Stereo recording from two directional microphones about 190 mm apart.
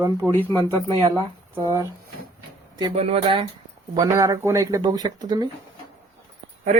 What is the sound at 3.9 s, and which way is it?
Speech, 20° right (ahead or behind).